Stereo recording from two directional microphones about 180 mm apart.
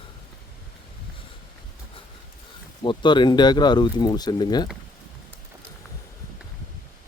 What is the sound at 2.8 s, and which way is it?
Speech, 25° left (ahead or behind).